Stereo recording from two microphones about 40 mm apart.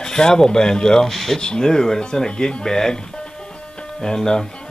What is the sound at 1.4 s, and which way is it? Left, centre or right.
Speech, centre.